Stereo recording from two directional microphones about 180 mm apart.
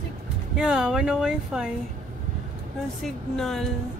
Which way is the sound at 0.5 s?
5° right (ahead or behind).